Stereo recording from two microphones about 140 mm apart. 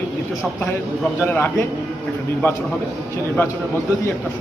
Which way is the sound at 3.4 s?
15° left (ahead or behind).